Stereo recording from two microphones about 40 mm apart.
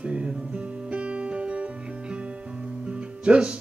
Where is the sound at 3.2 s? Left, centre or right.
Right.